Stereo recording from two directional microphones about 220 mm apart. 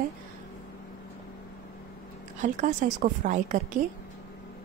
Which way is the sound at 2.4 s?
35° right (ahead or behind).